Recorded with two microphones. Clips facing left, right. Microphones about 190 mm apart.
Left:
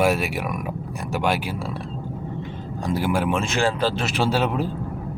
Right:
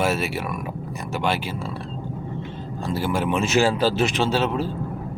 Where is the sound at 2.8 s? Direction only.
15° left (ahead or behind).